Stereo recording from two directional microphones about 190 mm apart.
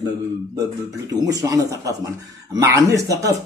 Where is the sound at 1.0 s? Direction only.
20° right (ahead or behind).